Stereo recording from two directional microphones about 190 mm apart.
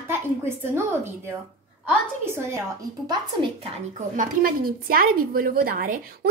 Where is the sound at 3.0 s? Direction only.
30° right (ahead or behind).